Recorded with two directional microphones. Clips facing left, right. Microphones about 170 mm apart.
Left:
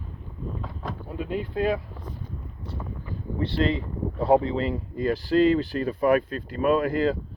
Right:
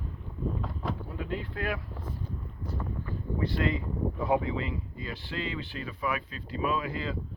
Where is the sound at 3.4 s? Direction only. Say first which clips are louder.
Left 5 dB; 30° left (ahead or behind).